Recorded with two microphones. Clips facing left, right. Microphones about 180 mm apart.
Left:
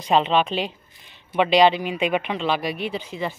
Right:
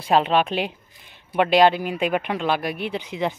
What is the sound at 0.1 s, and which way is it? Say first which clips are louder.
Speech: even; 5° right (ahead or behind).